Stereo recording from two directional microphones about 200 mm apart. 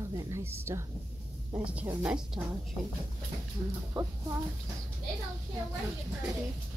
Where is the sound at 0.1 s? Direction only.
15° right (ahead or behind).